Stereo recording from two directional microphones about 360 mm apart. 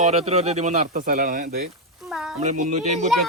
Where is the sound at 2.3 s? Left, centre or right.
Centre.